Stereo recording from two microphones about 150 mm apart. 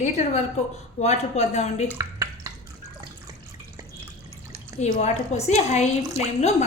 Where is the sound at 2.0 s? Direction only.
20° right (ahead or behind).